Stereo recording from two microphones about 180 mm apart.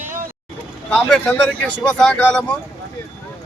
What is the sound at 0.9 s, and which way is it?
Speech, 5° left (ahead or behind).